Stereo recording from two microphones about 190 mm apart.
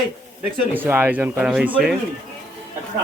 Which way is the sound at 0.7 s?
10° right (ahead or behind).